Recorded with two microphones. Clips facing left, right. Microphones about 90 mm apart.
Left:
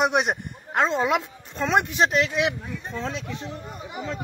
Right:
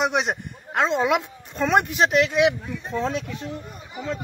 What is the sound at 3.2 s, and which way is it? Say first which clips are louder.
Speech: right 1 dB; 20° left (ahead or behind).